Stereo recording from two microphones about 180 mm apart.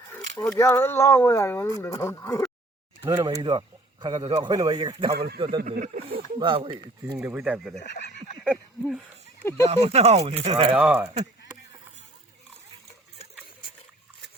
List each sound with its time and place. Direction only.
0.5 s speech: 15° left (ahead or behind)
3.0 s a man's voice: 20° right (ahead or behind)
5.6 s speech: 45° right (ahead or behind)
6.1 s a man's voice: 30° right (ahead or behind)
7.2 s speech: 5° right (ahead or behind)
9.4 s speech: 15° left (ahead or behind)
9.6 s speech: 40° right (ahead or behind)
10.8 s speech: 5° right (ahead or behind)